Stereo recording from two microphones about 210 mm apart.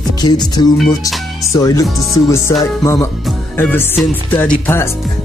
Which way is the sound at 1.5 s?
15° left (ahead or behind).